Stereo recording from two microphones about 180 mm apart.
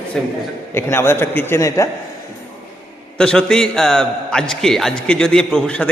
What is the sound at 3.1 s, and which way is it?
A man's voice, 5° left (ahead or behind).